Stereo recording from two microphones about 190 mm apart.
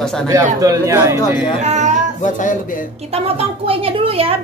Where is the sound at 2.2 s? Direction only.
40° left (ahead or behind).